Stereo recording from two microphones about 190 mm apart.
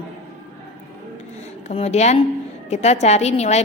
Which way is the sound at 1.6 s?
35° left (ahead or behind).